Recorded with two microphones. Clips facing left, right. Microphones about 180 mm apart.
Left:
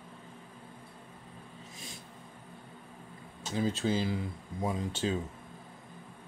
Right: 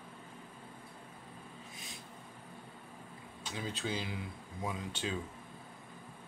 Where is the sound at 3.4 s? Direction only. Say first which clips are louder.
Left 9 dB; 40° left (ahead or behind).